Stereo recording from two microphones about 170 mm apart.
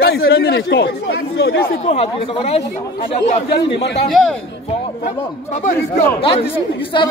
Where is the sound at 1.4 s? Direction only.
70° left (ahead or behind).